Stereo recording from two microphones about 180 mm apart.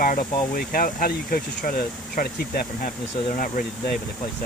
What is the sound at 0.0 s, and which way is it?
Speech, 50° left (ahead or behind).